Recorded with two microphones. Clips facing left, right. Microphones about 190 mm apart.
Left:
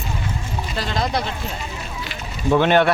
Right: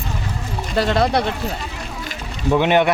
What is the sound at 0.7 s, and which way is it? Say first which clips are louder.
Speech: right 7 dB; 65° right (ahead or behind).